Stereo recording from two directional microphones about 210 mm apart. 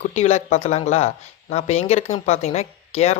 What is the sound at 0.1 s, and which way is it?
Speech, 30° left (ahead or behind).